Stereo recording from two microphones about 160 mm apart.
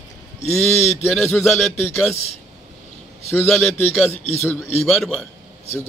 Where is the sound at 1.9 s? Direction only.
15° left (ahead or behind).